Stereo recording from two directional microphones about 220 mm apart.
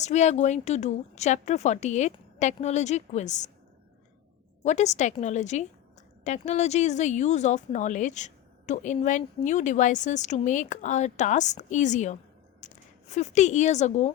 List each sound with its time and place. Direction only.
0.0 s speech: 30° left (ahead or behind)
4.6 s speech: 30° left (ahead or behind)